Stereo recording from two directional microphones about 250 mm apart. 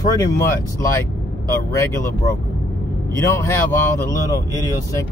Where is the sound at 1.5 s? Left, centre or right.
Centre.